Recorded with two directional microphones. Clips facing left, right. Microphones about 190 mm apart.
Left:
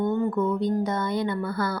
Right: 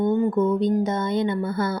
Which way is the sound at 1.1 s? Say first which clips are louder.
Right 3 dB; 20° right (ahead or behind).